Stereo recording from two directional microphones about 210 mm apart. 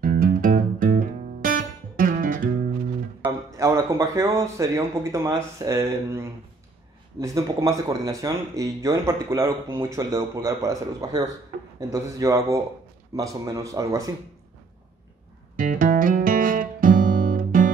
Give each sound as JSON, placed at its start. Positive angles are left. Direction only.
{"t": 0.0, "sound": "music", "side_deg": -40}
{"t": 3.2, "sound": "speech", "side_deg": -15}
{"t": 15.5, "sound": "music", "side_deg": -40}